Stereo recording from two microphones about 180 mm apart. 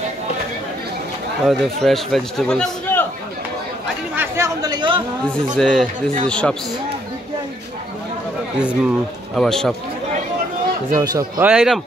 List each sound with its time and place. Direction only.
1.4 s a man's voice: centre (ahead or behind)
4.1 s chatter: 15° right (ahead or behind)
5.6 s a man's voice: centre (ahead or behind)
8.5 s a man's voice: 5° right (ahead or behind)
11.0 s a man's voice: 15° right (ahead or behind)